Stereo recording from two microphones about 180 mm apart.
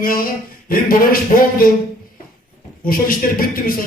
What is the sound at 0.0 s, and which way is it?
A man's voice, 50° left (ahead or behind).